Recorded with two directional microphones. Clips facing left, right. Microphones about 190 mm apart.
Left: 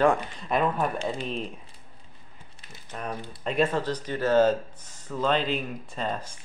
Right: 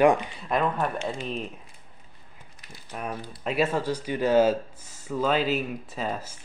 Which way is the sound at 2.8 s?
10° right (ahead or behind).